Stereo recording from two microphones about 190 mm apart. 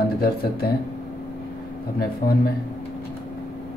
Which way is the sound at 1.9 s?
55° left (ahead or behind).